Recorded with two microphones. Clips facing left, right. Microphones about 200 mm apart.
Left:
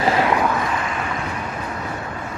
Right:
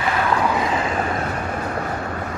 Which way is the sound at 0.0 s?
30° left (ahead or behind).